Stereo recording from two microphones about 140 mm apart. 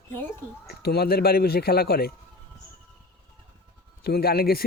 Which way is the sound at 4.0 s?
90° left.